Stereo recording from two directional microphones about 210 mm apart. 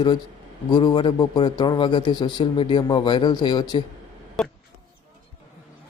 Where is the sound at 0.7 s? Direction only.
20° left (ahead or behind).